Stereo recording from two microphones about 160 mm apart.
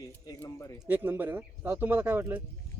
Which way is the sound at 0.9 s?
10° right (ahead or behind).